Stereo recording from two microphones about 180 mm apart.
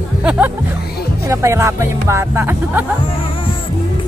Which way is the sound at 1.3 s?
15° right (ahead or behind).